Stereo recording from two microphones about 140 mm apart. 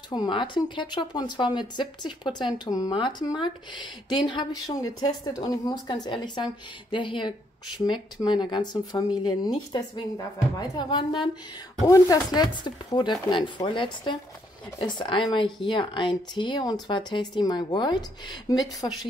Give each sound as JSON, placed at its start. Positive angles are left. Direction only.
{"t": 0.1, "sound": "speech", "side_deg": 35}